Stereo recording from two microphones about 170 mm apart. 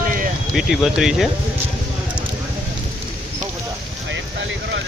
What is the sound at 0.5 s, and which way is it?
Speech, 5° right (ahead or behind).